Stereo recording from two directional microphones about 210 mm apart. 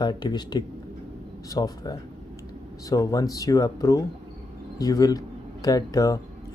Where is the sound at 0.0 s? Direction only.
20° left (ahead or behind).